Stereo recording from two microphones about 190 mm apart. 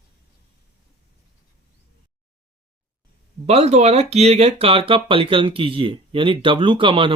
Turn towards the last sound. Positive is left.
turn(degrees=-25)  # may be behind; listen again after turning